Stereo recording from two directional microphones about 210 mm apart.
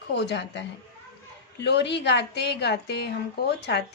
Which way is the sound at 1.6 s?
55° left (ahead or behind).